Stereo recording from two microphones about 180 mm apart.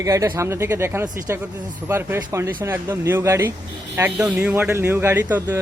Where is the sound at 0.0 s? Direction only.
20° right (ahead or behind).